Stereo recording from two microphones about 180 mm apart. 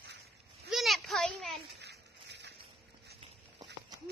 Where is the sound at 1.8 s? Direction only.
70° right (ahead or behind).